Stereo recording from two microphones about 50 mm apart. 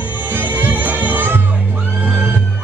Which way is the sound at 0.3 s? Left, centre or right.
Right.